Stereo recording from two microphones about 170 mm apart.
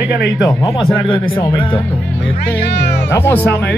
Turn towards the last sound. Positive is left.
turn(degrees=10)  # may be behind; listen again after turning